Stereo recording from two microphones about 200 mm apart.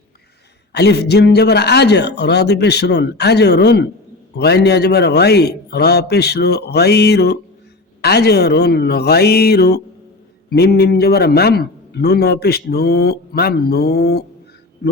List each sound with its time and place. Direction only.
0.7 s a man's voice: 55° left (ahead or behind)